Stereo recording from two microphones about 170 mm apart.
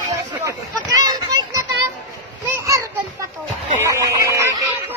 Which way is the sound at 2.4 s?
15° right (ahead or behind).